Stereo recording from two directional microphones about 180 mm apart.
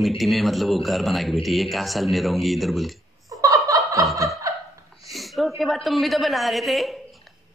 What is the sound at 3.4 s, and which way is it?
Laughter, 20° right (ahead or behind).